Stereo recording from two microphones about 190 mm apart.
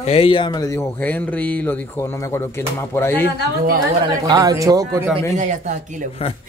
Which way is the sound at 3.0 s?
10° left (ahead or behind).